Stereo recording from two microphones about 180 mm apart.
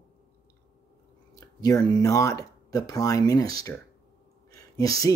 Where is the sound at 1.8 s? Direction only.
20° left (ahead or behind).